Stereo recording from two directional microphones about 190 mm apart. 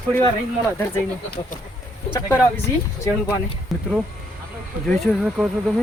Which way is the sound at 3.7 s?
Centre (ahead or behind).